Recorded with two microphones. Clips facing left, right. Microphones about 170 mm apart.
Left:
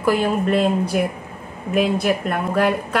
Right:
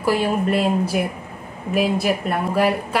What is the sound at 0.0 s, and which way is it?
A woman's voice, 5° right (ahead or behind).